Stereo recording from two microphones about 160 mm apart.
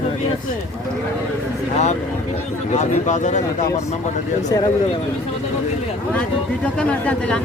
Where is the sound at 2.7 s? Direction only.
45° left (ahead or behind).